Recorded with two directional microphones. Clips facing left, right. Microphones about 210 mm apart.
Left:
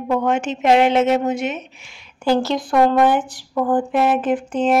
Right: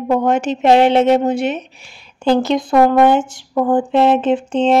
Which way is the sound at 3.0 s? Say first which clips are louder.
Right 4 dB; 20° right (ahead or behind).